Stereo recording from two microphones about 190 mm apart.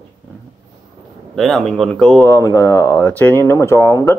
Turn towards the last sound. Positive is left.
turn(degrees=15)  # may be behind; listen again after turning